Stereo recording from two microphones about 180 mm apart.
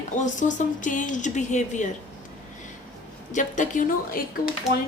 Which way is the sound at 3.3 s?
45° left (ahead or behind).